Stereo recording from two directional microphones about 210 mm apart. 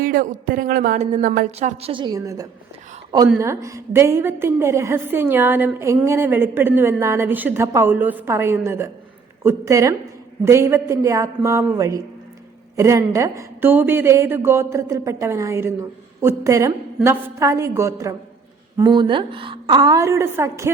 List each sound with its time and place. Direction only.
0.0 s a woman's voice: 40° right (ahead or behind); by 20.7 s 10° right (ahead or behind)